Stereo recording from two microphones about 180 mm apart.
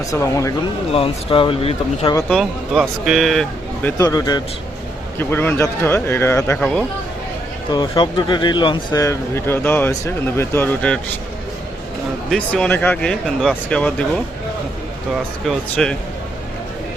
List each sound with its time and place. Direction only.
0.2 s speech: 15° left (ahead or behind)
0.9 s speech: 30° left (ahead or behind)
2.3 s speech: centre (ahead or behind)
3.8 s speech: 20° left (ahead or behind)
7.7 s speech: 25° left (ahead or behind); by 11.0 s 10° left (ahead or behind)
12.3 s speech: 5° left (ahead or behind)
15.1 s speech: centre (ahead or behind)